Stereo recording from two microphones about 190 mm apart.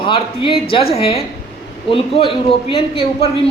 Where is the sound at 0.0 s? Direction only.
25° left (ahead or behind).